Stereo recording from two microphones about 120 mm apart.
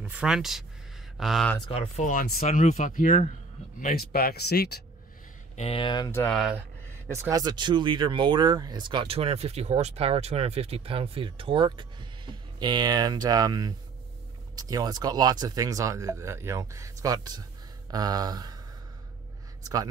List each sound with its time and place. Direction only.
0.0 s speech: 10° right (ahead or behind)
1.7 s speech: 65° left (ahead or behind); by 3.3 s 90° left
5.6 s speech: 50° left (ahead or behind)
6.3 s speech: 5° right (ahead or behind)
7.1 s speech: 25° right (ahead or behind)
19.6 s speech: 30° right (ahead or behind)